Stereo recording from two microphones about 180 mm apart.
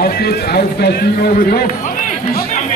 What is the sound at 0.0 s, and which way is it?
A man's voice, 60° left (ahead or behind).